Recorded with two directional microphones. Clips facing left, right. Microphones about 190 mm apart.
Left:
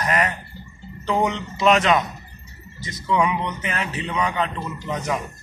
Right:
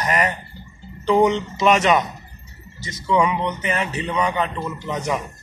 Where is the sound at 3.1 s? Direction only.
5° left (ahead or behind).